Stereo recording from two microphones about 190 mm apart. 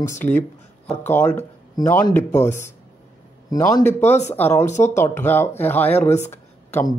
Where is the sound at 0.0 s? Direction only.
15° left (ahead or behind).